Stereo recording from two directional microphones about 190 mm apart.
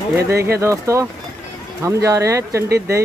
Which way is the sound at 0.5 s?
15° right (ahead or behind).